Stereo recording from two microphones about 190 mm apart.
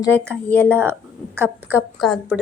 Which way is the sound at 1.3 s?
10° right (ahead or behind).